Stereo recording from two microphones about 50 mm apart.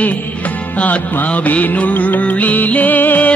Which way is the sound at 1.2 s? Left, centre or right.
Left.